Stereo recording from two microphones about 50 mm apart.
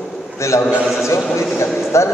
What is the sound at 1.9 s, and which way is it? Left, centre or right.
Speech, left.